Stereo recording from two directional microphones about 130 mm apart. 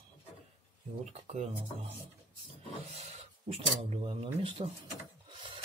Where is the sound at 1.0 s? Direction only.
55° right (ahead or behind).